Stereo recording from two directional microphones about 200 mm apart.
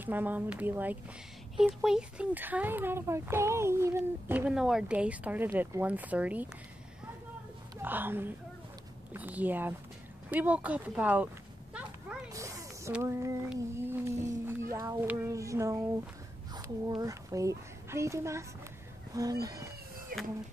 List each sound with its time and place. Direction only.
0.0 s speech: 10° right (ahead or behind)
7.8 s speech: 10° right (ahead or behind)
12.3 s a sound: 15° right (ahead or behind)
13.5 s child singing: 10° right (ahead or behind)
16.5 s a woman's voice: 20° right (ahead or behind)
20.1 s speech: 45° right (ahead or behind)